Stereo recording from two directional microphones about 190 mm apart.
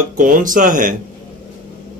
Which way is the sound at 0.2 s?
45° right (ahead or behind).